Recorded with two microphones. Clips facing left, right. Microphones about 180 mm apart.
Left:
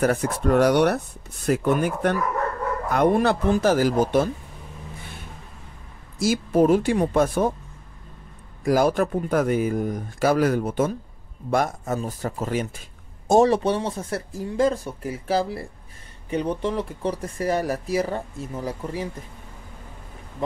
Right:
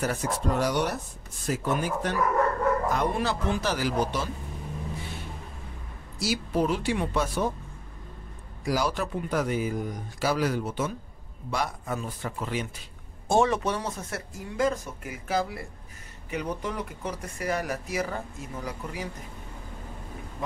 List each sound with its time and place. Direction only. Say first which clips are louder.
0.0 s speech: left 7 dB; 60° left (ahead or behind)
6.1 s speech: left 7 dB; 50° left (ahead or behind)
8.6 s speech: left 8 dB; 50° left (ahead or behind); by 19.0 s 30° left (ahead or behind)